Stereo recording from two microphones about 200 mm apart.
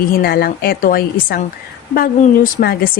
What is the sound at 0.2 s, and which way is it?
Speech, 50° left (ahead or behind).